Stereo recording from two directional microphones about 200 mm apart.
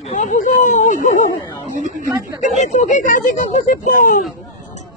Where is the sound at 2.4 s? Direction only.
35° left (ahead or behind).